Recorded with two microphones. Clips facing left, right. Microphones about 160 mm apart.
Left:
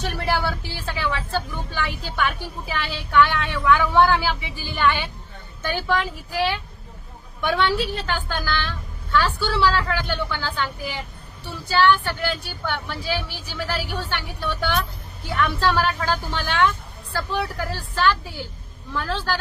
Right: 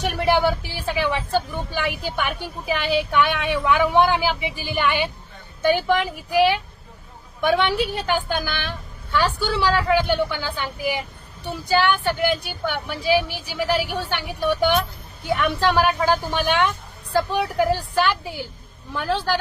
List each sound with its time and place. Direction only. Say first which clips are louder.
0.0 s a woman's voice: right 5 dB; 15° right (ahead or behind)